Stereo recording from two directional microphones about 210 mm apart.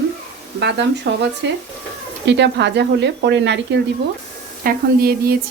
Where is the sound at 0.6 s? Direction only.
55° right (ahead or behind).